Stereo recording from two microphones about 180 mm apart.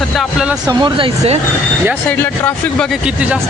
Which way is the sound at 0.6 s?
25° right (ahead or behind).